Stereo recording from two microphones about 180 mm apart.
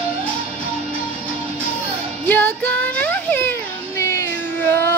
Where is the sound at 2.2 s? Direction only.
10° left (ahead or behind).